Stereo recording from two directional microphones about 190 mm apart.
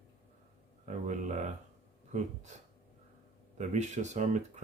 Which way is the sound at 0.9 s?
40° right (ahead or behind).